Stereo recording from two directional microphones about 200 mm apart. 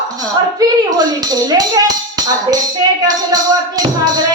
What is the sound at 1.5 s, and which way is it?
Speech, 20° right (ahead or behind).